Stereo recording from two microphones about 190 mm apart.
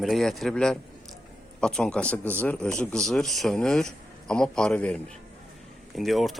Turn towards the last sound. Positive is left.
turn(degrees=0)  # may be behind; listen again after turning